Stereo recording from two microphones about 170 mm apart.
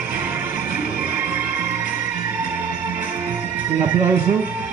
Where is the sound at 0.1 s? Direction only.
10° right (ahead or behind).